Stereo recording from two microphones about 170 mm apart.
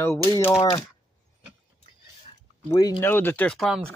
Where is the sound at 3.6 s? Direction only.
Centre (ahead or behind).